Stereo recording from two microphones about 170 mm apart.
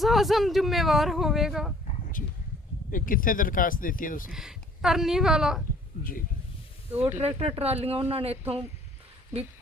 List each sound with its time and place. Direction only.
0.0 s speech: centre (ahead or behind)
2.9 s speech: 55° left (ahead or behind)
4.3 s speech: 5° right (ahead or behind)
6.0 s speech: 55° left (ahead or behind)
7.2 s speech: 35° right (ahead or behind)